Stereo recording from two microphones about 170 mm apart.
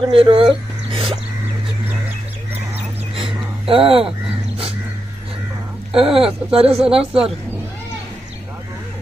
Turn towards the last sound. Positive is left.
turn(degrees=-35)  # may be behind; listen again after turning